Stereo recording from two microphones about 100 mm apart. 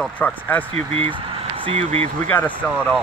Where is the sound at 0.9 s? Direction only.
65° right (ahead or behind); by 2.0 s 90° right.